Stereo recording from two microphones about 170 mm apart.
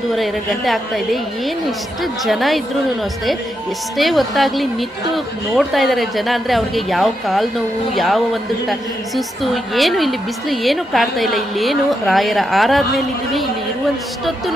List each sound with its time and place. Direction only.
0.1 s a woman's voice: centre (ahead or behind)
3.9 s a woman's voice: centre (ahead or behind)